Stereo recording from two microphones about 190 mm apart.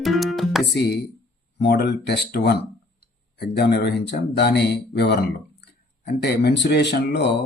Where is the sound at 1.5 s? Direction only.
60° left (ahead or behind).